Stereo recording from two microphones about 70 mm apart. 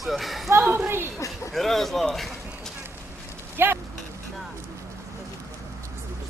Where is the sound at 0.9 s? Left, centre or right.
Right.